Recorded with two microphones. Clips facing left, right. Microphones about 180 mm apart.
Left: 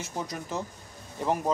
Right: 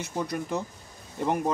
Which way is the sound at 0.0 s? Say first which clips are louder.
Right 4 dB; 60° right (ahead or behind).